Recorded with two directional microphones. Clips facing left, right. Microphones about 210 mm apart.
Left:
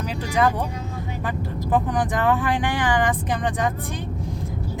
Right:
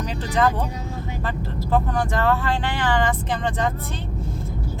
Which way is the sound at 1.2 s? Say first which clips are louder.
Left 2 dB; 15° left (ahead or behind).